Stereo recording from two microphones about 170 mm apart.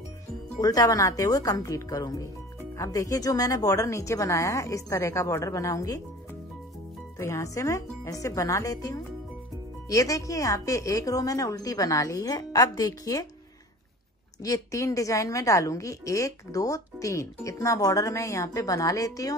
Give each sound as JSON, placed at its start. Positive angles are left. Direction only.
{"t": 0.6, "sound": "a woman's voice", "side_deg": 20}
{"t": 7.2, "sound": "a woman's voice", "side_deg": 15}
{"t": 14.4, "sound": "a woman's voice", "side_deg": 20}